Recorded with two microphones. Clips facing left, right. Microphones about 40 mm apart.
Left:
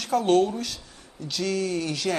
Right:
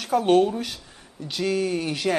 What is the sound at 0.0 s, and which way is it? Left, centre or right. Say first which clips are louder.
Speech: right 2 dB; centre.